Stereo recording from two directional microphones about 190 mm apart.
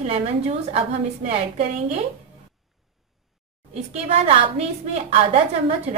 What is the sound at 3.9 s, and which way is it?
A woman's voice, 35° right (ahead or behind).